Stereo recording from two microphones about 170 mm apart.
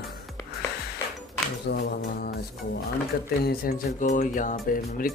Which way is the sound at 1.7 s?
75° left (ahead or behind).